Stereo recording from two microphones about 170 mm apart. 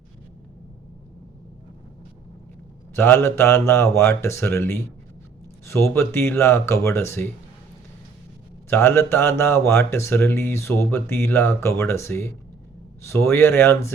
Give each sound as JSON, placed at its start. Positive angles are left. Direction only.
{"t": 2.9, "sound": "speech", "side_deg": 15}
{"t": 8.7, "sound": "speech", "side_deg": 15}